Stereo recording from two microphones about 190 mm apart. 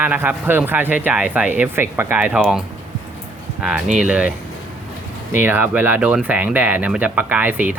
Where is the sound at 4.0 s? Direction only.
5° right (ahead or behind).